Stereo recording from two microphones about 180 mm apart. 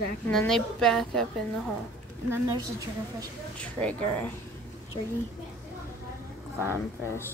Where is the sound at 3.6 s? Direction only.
5° left (ahead or behind).